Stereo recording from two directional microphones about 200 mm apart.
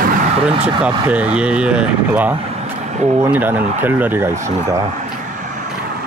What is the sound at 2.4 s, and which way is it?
Vehicle, 35° right (ahead or behind).